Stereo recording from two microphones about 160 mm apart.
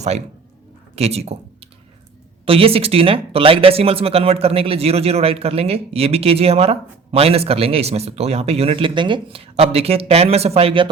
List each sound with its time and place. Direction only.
0.9 s speech: 40° right (ahead or behind)
2.5 s speech: 35° right (ahead or behind)